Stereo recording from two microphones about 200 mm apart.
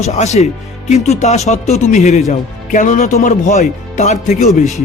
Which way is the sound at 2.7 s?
40° left (ahead or behind).